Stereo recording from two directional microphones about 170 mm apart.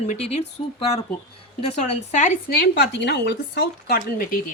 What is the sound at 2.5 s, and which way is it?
Speech, 80° left.